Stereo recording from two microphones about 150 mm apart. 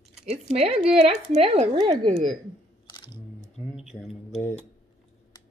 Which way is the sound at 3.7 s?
Centre (ahead or behind).